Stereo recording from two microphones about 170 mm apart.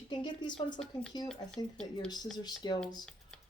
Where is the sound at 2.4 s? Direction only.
25° left (ahead or behind).